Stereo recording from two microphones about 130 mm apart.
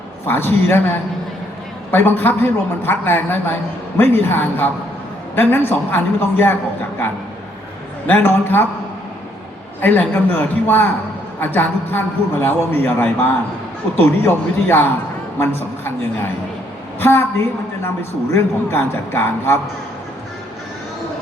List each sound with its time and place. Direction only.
0.3 s a man's voice: 15° left (ahead or behind)
8.0 s a man's voice: 15° left (ahead or behind)
9.8 s a man's voice: 15° left (ahead or behind)
18.3 s a man's voice: 20° left (ahead or behind)